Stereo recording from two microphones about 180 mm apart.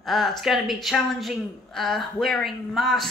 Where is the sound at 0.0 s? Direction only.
Centre (ahead or behind).